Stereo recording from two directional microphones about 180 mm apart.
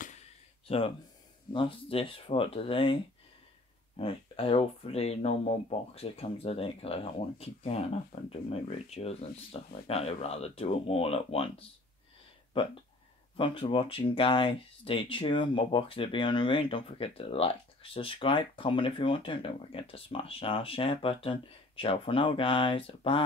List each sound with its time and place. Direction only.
0.7 s speech: 30° left (ahead or behind)
13.4 s speech: 30° left (ahead or behind)